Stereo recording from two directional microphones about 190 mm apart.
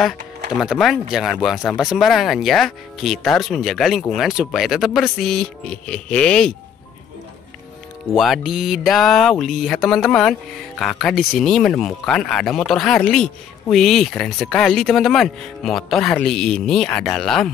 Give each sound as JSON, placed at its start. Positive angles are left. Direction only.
{"t": 0.0, "sound": "speech", "side_deg": 0}
{"t": 8.1, "sound": "speech", "side_deg": 0}